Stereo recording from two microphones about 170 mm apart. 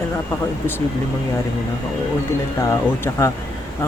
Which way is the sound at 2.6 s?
15° left (ahead or behind).